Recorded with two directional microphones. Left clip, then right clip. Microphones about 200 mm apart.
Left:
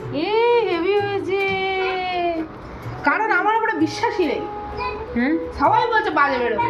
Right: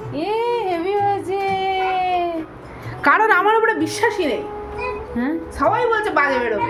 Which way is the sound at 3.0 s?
45° right (ahead or behind).